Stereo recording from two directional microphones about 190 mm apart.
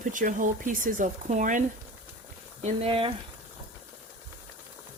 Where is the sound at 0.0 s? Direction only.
45° right (ahead or behind).